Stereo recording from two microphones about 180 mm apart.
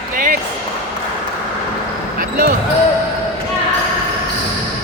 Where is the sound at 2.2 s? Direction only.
60° right (ahead or behind).